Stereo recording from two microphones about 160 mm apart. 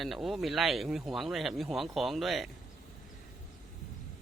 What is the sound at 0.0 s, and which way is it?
Speech, centre (ahead or behind).